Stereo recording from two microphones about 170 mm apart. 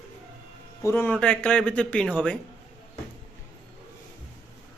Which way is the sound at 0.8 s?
15° left (ahead or behind).